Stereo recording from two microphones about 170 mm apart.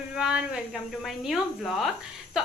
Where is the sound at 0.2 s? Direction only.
5° right (ahead or behind).